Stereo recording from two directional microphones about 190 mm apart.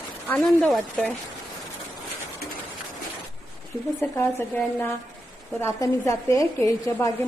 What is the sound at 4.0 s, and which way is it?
Speech, 10° left (ahead or behind).